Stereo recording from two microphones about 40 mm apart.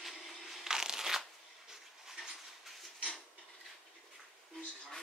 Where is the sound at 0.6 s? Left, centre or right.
Centre.